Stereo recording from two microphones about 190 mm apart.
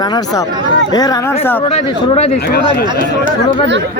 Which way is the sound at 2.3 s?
55° left (ahead or behind).